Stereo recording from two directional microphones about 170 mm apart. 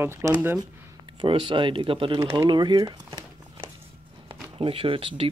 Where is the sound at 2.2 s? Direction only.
20° right (ahead or behind).